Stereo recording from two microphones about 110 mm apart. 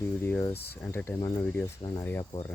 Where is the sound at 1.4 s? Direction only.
15° left (ahead or behind).